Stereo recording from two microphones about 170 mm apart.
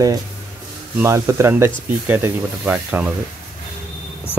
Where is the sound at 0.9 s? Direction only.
15° right (ahead or behind).